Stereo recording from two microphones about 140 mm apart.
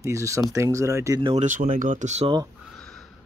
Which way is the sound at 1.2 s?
50° right (ahead or behind).